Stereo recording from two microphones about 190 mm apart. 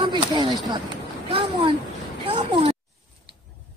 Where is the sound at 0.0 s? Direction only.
25° right (ahead or behind).